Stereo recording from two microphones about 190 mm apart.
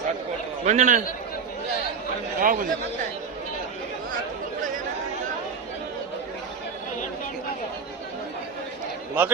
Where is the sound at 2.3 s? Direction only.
45° right (ahead or behind).